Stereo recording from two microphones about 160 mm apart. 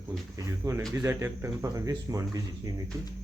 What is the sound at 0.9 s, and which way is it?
Speech, 15° right (ahead or behind).